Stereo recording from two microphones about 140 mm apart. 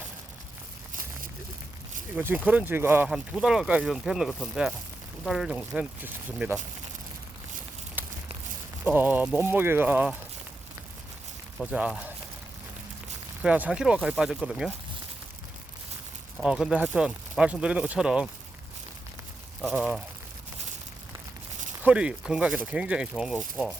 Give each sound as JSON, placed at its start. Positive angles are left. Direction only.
{"t": 2.1, "sound": "speech", "side_deg": -10}
{"t": 3.1, "sound": "speech", "side_deg": -5}
{"t": 8.0, "sound": "a sound", "side_deg": -15}
{"t": 8.8, "sound": "speech", "side_deg": -10}
{"t": 11.7, "sound": "speech", "side_deg": -10}
{"t": 13.4, "sound": "speech", "side_deg": -10}
{"t": 16.4, "sound": "speech", "side_deg": -5}
{"t": 19.6, "sound": "speech", "side_deg": -5}
{"t": 21.8, "sound": "speech", "side_deg": -5}